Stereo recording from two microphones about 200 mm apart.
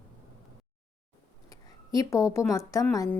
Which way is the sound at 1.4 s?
20° left (ahead or behind).